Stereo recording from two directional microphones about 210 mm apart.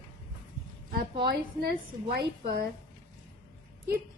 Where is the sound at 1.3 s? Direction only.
45° right (ahead or behind).